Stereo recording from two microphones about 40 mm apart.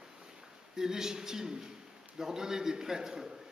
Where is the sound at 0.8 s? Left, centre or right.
Centre.